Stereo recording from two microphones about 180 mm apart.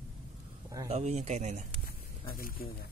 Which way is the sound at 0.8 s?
35° right (ahead or behind).